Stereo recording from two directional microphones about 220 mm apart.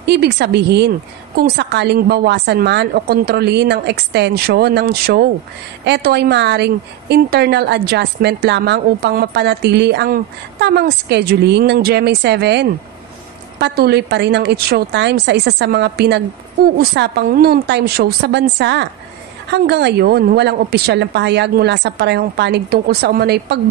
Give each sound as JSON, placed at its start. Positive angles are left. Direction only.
{"t": 0.0, "sound": "a woman's voice", "side_deg": -50}